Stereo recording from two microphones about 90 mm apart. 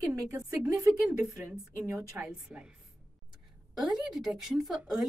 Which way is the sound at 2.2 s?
20° right (ahead or behind).